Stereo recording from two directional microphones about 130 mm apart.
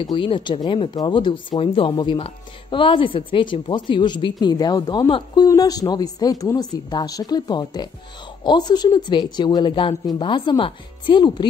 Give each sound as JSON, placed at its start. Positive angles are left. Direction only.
{"t": 0.0, "sound": "speech", "side_deg": 40}